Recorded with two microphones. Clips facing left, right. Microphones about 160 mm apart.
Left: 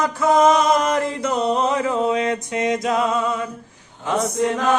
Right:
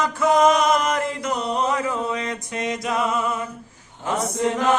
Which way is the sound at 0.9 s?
30° left (ahead or behind).